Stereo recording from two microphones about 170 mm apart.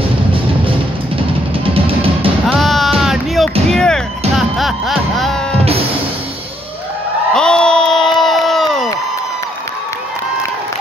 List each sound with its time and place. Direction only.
0.3 s music: 30° right (ahead or behind)
2.4 s music: centre (ahead or behind)
7.3 s a sound: 5° left (ahead or behind)